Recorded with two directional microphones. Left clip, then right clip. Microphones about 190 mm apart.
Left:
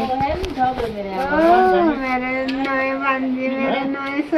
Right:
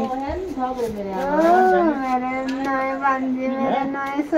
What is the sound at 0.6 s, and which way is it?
Speech, 25° right (ahead or behind).